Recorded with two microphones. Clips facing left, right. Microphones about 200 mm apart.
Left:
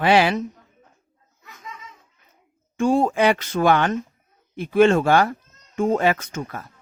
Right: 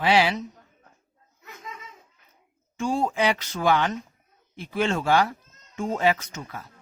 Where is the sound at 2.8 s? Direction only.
55° left (ahead or behind).